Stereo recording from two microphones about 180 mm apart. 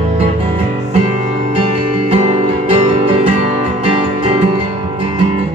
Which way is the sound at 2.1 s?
35° right (ahead or behind).